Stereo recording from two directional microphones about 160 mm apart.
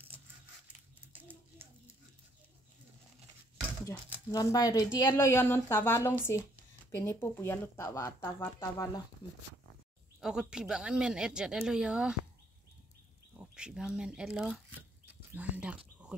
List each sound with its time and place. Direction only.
1.1 s a sound: 10° right (ahead or behind)
4.3 s speech: 25° left (ahead or behind)
10.2 s speech: 5° right (ahead or behind)
13.6 s speech: 5° right (ahead or behind)